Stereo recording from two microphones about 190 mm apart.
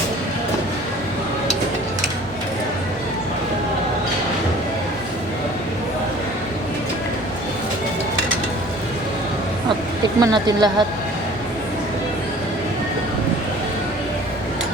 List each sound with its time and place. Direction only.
10.2 s speech: 20° right (ahead or behind)